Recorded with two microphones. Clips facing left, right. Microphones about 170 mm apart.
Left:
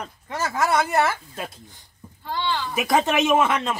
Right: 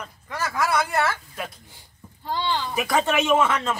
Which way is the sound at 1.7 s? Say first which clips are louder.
Left 1 dB; 15° right (ahead or behind).